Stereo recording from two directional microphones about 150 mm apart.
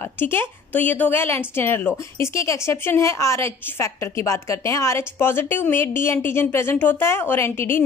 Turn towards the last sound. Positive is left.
turn(degrees=15)  # may be behind; listen again after turning